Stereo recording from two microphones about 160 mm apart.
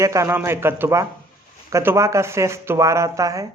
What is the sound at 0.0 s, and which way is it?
A man's voice, 20° right (ahead or behind).